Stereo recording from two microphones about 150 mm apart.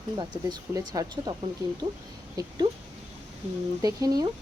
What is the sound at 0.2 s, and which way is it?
Speech, 25° right (ahead or behind).